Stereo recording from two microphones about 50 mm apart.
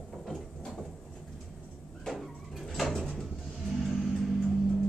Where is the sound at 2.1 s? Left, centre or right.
Centre.